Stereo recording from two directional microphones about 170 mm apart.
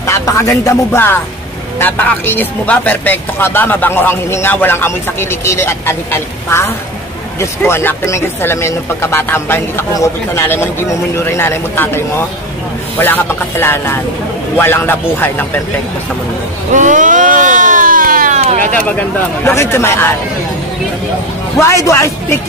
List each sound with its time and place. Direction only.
0.0 s speech: 20° left (ahead or behind)
16.7 s a sound: 50° right (ahead or behind)
19.4 s speech: 15° left (ahead or behind)
21.5 s speech: 15° left (ahead or behind)